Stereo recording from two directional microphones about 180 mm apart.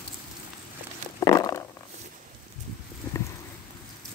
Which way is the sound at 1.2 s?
20° left (ahead or behind).